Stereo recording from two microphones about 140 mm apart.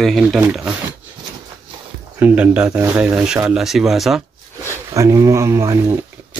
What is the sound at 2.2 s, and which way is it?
Speech, 10° right (ahead or behind).